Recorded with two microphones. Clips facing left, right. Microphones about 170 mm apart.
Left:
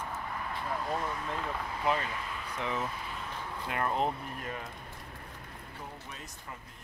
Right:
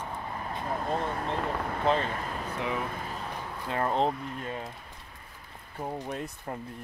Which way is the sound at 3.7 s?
30° right (ahead or behind).